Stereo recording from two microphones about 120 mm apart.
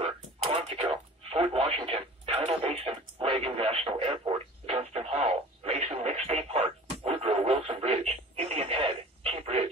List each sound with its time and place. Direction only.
0.0 s radio: 55° right (ahead or behind)